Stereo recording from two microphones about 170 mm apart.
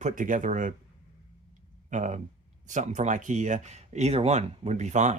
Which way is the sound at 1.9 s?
45° right (ahead or behind).